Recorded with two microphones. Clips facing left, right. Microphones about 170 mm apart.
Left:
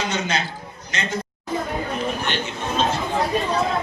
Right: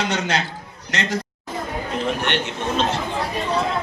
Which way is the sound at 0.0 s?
75° right (ahead or behind).